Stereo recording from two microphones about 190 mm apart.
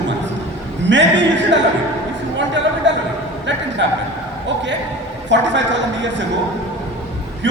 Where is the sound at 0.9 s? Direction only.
70° right (ahead or behind).